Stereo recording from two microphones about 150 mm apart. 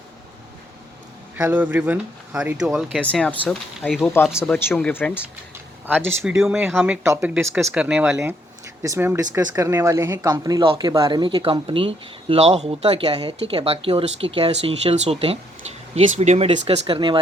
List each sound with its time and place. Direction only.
1.4 s speech: 15° right (ahead or behind); by 5.1 s 10° left (ahead or behind)
6.4 s speech: 5° right (ahead or behind)
8.8 s speech: 20° right (ahead or behind); by 16.8 s 45° right (ahead or behind)
16.8 s speech: 30° right (ahead or behind)